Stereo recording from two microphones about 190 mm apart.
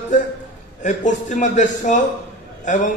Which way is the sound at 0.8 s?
40° left (ahead or behind).